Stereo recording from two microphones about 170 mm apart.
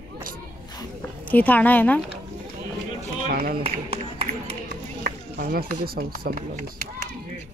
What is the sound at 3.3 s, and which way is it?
Speech, 60° right (ahead or behind).